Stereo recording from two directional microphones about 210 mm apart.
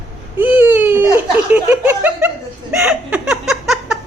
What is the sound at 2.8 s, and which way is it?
Laughter, 5° right (ahead or behind).